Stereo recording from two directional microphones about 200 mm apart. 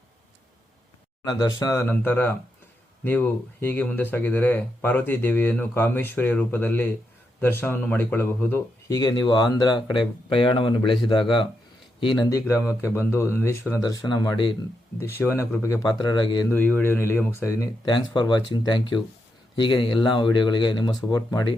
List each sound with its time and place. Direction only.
1.2 s speech: 20° left (ahead or behind)
14.9 s speech: 15° left (ahead or behind)
16.5 s speech: 10° left (ahead or behind)